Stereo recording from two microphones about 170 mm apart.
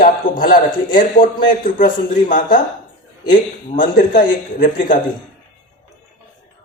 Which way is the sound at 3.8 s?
55° left (ahead or behind).